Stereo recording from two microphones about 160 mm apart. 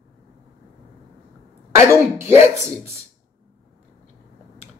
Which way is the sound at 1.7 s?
15° right (ahead or behind).